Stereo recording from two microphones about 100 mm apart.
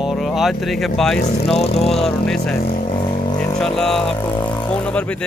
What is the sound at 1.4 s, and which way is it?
Speech, 85° left.